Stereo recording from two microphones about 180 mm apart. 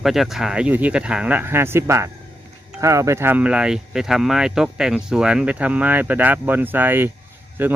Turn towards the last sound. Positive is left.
turn(degrees=-10)  # may be behind; listen again after turning